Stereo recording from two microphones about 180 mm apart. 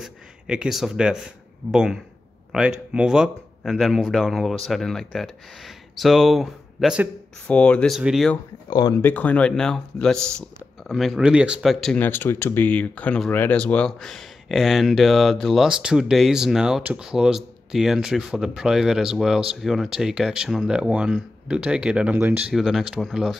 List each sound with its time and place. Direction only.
0.0 s speech: 5° right (ahead or behind)
8.6 s speech: 20° left (ahead or behind)
9.0 s speech: 10° left (ahead or behind)